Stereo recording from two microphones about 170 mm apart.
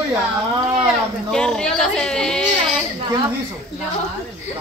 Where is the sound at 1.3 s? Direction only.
5° left (ahead or behind).